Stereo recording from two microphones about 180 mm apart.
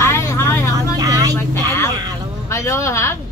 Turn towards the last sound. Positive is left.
turn(degrees=15)  # may be behind; listen again after turning